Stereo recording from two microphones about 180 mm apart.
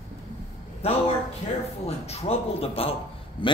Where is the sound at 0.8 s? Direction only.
35° left (ahead or behind).